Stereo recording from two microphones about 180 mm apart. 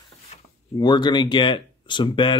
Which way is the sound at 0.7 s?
25° left (ahead or behind).